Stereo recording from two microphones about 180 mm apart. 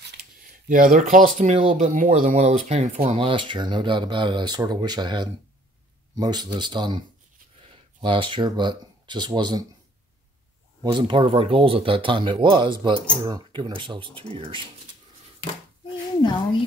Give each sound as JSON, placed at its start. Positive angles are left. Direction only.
{"t": 0.4, "sound": "speech", "side_deg": -50}
{"t": 3.2, "sound": "speech", "side_deg": -30}
{"t": 10.8, "sound": "speech", "side_deg": -25}
{"t": 16.2, "sound": "speech", "side_deg": 25}